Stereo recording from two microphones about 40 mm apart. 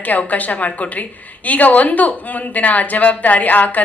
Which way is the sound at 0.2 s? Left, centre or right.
Left.